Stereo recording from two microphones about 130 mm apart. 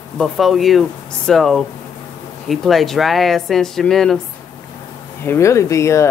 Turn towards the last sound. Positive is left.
turn(degrees=20)  # may be behind; listen again after turning